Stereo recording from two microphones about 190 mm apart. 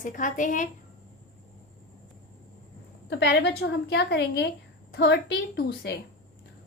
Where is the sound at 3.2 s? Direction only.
65° left (ahead or behind).